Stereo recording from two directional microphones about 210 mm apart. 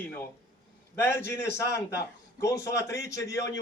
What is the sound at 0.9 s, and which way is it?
A man's voice, 10° left (ahead or behind).